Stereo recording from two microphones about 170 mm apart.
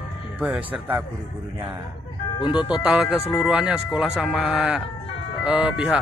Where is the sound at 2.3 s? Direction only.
30° left (ahead or behind).